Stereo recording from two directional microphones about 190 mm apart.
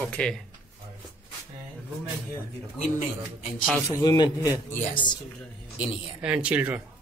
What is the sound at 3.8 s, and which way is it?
Speech, 20° left (ahead or behind).